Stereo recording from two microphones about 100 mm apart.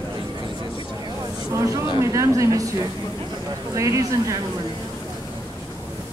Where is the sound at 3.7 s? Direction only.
30° right (ahead or behind).